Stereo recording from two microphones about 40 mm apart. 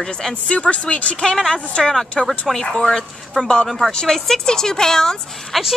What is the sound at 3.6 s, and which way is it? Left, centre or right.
Speech, centre.